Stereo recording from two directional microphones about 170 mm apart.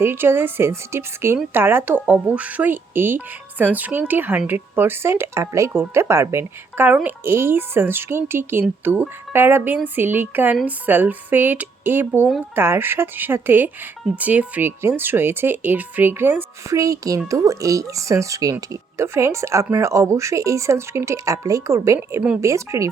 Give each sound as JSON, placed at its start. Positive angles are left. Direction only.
{"t": 0.0, "sound": "speech", "side_deg": -15}